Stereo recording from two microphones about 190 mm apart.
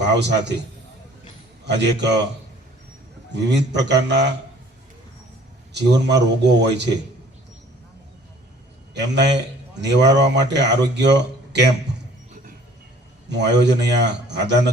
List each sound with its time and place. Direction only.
0.0 s a man's voice: 65° right (ahead or behind)
1.6 s a man's voice: 65° right (ahead or behind)
3.3 s a man's voice: 65° right (ahead or behind)
5.7 s a man's voice: 65° right (ahead or behind)
9.0 s a man's voice: 65° right (ahead or behind)
13.2 s a man's voice: 65° right (ahead or behind)